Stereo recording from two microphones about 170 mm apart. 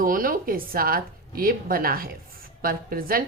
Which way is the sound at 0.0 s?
55° right (ahead or behind).